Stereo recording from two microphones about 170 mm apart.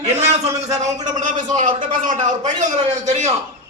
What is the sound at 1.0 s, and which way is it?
A man's voice, 50° right (ahead or behind).